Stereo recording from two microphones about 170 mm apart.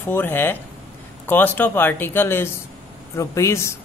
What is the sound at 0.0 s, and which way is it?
A man's voice, 10° left (ahead or behind).